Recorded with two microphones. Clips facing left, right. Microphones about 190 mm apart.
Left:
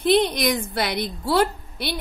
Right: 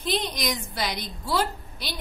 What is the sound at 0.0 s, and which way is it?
A woman's voice, 60° left (ahead or behind).